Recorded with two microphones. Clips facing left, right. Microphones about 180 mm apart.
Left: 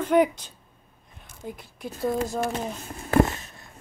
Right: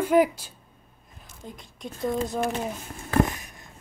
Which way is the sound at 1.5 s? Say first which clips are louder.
Left 3 dB; 5° left (ahead or behind).